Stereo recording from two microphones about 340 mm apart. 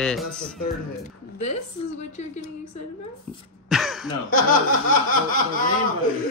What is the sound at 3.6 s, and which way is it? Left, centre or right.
Throat clearing, centre.